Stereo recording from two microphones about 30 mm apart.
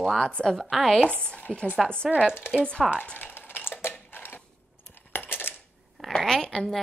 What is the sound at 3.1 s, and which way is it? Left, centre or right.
Typing, left.